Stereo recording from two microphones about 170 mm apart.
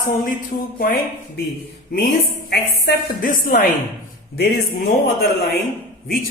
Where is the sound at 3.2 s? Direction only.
55° left (ahead or behind).